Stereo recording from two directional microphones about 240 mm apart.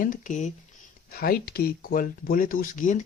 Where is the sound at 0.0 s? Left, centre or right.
Left.